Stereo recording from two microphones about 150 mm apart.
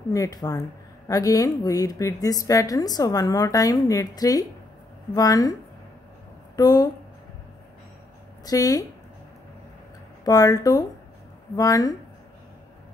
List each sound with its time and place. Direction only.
0.1 s a woman's voice: 25° left (ahead or behind)
8.5 s speech: 20° left (ahead or behind)
10.2 s speech: 25° left (ahead or behind)